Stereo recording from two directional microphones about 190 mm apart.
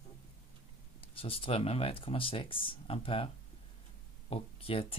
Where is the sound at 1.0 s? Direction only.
30° left (ahead or behind).